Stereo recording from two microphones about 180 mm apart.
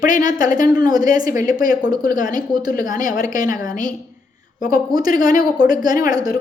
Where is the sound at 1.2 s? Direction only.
50° left (ahead or behind).